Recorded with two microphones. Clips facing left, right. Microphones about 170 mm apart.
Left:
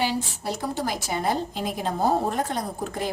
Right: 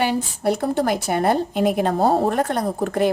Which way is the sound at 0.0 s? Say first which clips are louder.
Right 6 dB; 60° right (ahead or behind).